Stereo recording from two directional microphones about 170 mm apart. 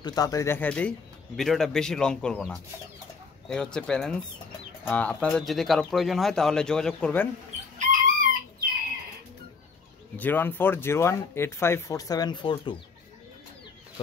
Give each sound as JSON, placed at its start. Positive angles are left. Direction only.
{"t": 0.0, "sound": "speech", "side_deg": 20}
{"t": 7.8, "sound": "chicken", "side_deg": -55}
{"t": 10.1, "sound": "speech", "side_deg": 10}